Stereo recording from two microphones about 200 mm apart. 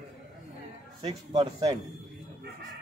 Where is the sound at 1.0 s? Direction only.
25° right (ahead or behind).